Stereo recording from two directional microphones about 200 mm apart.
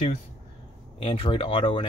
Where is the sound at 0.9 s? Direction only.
25° left (ahead or behind).